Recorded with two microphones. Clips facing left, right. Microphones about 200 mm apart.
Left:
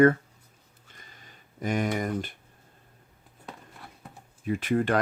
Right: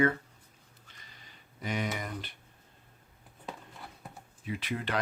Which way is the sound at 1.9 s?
45° left (ahead or behind).